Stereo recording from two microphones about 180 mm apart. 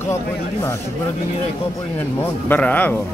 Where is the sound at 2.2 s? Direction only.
10° left (ahead or behind).